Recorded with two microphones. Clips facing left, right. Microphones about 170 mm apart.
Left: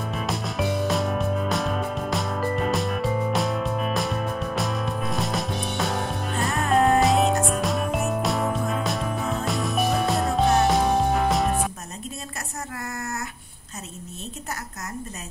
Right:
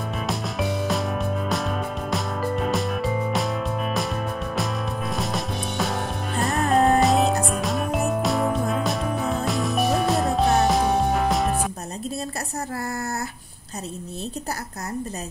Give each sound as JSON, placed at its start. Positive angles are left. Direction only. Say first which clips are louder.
{"t": 0.1, "sound": "music", "louder": "right 1 dB", "side_deg": 0}